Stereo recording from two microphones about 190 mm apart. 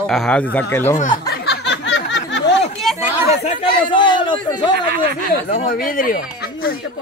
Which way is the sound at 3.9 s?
25° left (ahead or behind).